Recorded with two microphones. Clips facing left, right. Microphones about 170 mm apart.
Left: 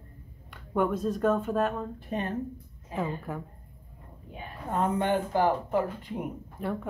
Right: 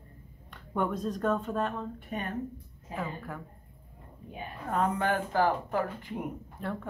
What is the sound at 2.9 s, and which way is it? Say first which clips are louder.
Speech: left 4 dB; 20° left (ahead or behind).